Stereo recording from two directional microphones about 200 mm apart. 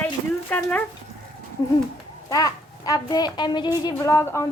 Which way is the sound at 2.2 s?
20° left (ahead or behind).